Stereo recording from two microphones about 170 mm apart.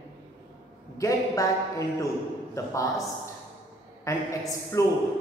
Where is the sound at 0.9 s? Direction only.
20° left (ahead or behind).